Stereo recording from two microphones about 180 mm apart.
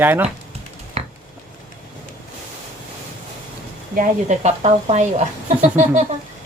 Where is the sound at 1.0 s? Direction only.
35° right (ahead or behind).